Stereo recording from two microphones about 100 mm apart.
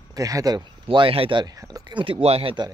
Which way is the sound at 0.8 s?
60° right (ahead or behind).